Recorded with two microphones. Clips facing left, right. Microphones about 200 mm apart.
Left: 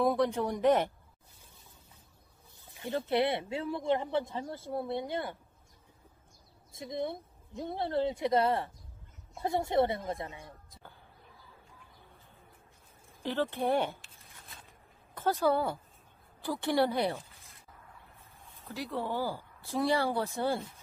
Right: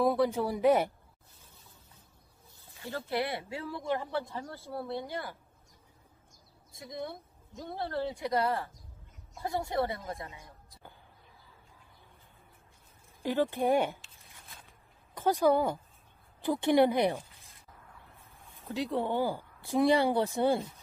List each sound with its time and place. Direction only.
0.0 s speech: centre (ahead or behind)
2.8 s a woman's voice: 20° left (ahead or behind)
6.7 s a woman's voice: 25° left (ahead or behind)
13.2 s speech: 10° right (ahead or behind)
15.1 s a woman's voice: 15° right (ahead or behind)
18.7 s speech: 20° right (ahead or behind)